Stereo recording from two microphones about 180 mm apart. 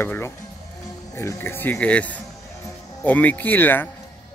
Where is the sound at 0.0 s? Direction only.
10° left (ahead or behind).